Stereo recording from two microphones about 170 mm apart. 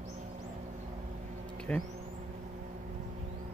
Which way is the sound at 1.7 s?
5° left (ahead or behind).